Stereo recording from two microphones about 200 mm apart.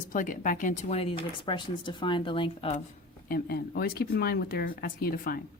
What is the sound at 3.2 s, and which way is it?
A woman's voice, 50° left (ahead or behind).